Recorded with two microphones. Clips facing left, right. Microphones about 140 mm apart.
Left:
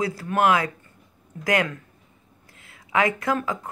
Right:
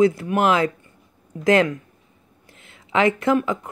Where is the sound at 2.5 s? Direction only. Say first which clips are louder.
Right 2 dB; 25° right (ahead or behind).